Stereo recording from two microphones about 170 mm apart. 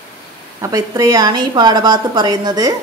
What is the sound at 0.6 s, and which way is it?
A woman's voice, 20° right (ahead or behind).